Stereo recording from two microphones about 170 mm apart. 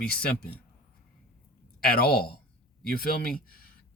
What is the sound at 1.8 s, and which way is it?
Speech, 65° left (ahead or behind).